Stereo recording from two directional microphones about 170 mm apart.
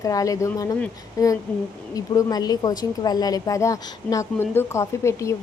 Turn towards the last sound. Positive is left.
turn(degrees=15)  # may be behind; listen again after turning